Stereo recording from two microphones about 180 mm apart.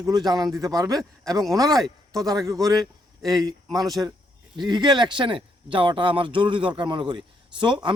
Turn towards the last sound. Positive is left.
turn(degrees=-25)  # may be behind; listen again after turning